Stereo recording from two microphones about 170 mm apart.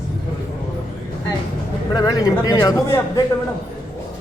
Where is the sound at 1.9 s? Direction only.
20° left (ahead or behind).